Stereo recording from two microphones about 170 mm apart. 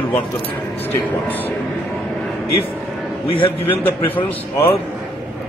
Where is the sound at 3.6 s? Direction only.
10° left (ahead or behind).